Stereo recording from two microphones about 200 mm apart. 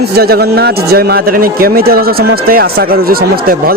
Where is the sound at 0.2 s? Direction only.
50° right (ahead or behind).